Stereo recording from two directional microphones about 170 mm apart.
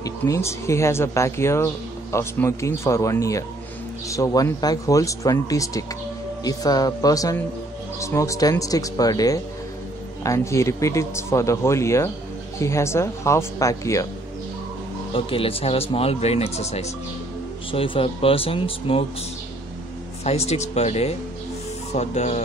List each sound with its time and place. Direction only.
0.0 s speech: 15° left (ahead or behind)
15.1 s speech: 30° left (ahead or behind)
20.2 s speech: 40° left (ahead or behind)